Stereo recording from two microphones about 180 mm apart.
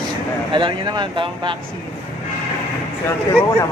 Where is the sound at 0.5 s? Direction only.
25° right (ahead or behind).